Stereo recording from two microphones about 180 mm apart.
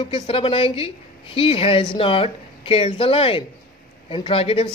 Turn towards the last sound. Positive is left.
turn(degrees=30)  # may be behind; listen again after turning